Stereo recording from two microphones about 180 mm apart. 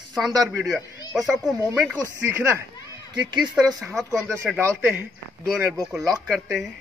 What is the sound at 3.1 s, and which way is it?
Speech, 25° right (ahead or behind).